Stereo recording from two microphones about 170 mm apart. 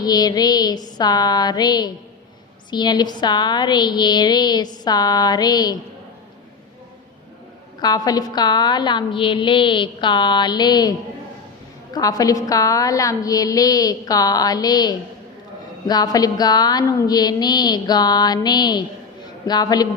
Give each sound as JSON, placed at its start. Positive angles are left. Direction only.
{"t": 0.0, "sound": "a woman's voice", "side_deg": 25}
{"t": 7.8, "sound": "a woman's voice", "side_deg": 25}
{"t": 11.9, "sound": "a woman's voice", "side_deg": 20}